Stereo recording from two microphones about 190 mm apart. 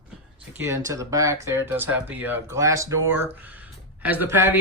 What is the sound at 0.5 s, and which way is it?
Speech, 15° right (ahead or behind).